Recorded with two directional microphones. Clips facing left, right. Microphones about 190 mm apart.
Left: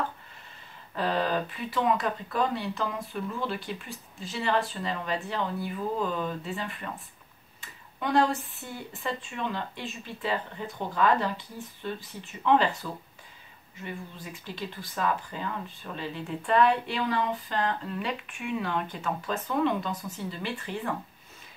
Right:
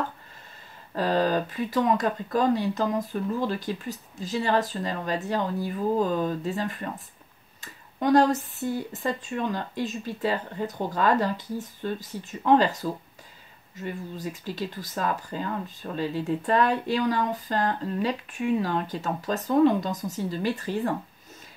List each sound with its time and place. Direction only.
0.9 s speech: 40° right (ahead or behind)